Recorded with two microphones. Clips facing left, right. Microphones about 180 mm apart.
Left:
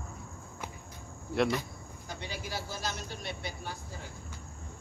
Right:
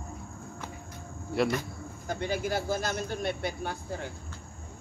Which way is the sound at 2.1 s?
50° right (ahead or behind).